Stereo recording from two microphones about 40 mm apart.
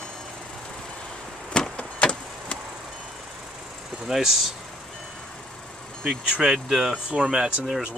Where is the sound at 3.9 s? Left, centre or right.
Centre.